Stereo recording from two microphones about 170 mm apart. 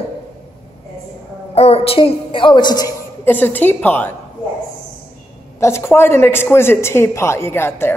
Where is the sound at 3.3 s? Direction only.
10° left (ahead or behind).